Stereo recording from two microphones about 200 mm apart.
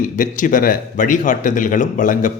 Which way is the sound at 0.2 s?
40° left (ahead or behind).